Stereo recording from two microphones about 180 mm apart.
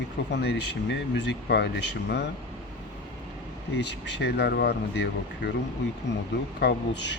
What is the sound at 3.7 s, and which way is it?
Speech, 70° left (ahead or behind).